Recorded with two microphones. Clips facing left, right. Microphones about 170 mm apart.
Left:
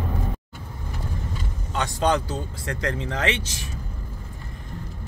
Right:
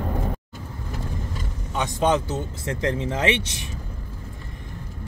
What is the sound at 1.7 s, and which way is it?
Speech, 20° right (ahead or behind).